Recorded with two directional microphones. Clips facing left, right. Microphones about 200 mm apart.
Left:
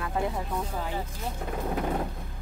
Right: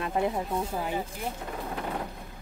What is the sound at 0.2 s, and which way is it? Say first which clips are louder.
Speech: right 2 dB; 20° right (ahead or behind).